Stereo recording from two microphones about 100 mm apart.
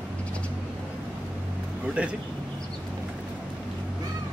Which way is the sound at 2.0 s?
10° right (ahead or behind).